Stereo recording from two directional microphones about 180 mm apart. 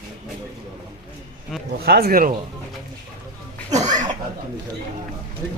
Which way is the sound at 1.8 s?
60° right (ahead or behind).